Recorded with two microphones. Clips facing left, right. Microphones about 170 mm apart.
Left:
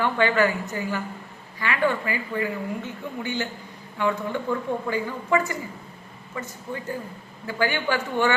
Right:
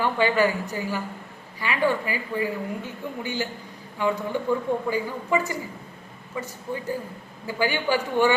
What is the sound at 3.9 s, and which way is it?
A woman's voice, 15° right (ahead or behind).